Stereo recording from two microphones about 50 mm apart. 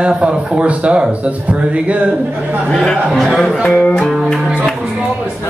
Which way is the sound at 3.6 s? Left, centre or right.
Left.